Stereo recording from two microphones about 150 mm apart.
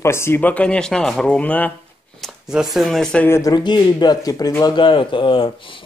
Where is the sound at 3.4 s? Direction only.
25° left (ahead or behind).